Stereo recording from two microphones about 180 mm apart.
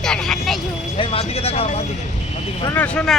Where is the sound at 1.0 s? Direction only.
30° left (ahead or behind).